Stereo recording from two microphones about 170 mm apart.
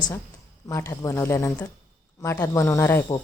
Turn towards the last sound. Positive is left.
turn(degrees=15)  # may be behind; listen again after turning